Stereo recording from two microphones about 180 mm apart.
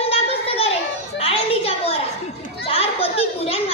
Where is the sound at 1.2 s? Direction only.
35° left (ahead or behind).